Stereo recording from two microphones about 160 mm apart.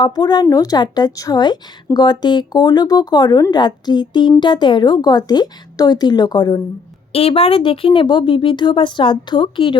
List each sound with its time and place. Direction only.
0.0 s a woman's voice: 25° left (ahead or behind)
7.1 s speech: 40° left (ahead or behind)